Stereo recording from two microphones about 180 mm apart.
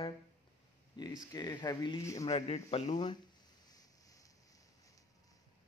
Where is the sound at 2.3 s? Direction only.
35° left (ahead or behind).